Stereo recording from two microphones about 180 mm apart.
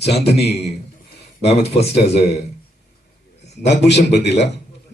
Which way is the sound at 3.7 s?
70° left (ahead or behind).